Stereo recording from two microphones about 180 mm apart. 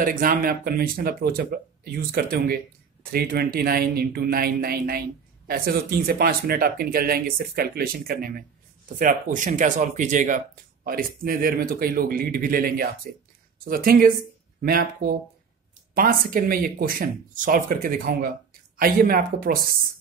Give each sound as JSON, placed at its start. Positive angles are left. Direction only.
{"t": 0.0, "sound": "speech", "side_deg": -50}